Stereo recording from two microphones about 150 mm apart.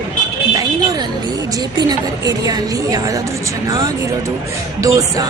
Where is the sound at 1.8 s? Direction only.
25° right (ahead or behind).